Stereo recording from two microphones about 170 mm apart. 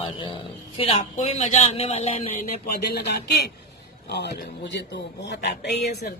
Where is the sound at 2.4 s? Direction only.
60° left (ahead or behind); by 5.5 s 90° left.